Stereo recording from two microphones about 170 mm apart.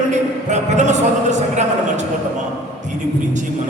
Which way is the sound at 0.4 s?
45° right (ahead or behind).